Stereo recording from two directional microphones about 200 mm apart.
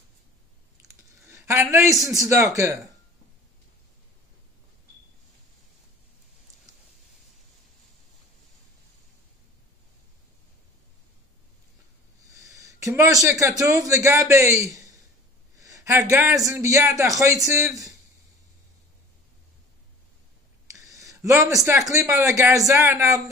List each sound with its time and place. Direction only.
1.2 s a man's voice: 15° right (ahead or behind)
12.4 s a man's voice: 15° right (ahead or behind)
20.7 s speech: 15° right (ahead or behind)